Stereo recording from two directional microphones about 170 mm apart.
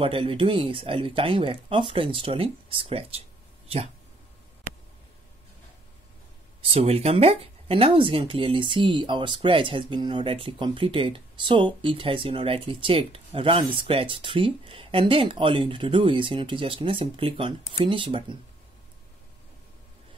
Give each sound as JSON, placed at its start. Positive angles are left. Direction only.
{"t": 0.0, "sound": "speech", "side_deg": -30}
{"t": 6.6, "sound": "speech", "side_deg": -35}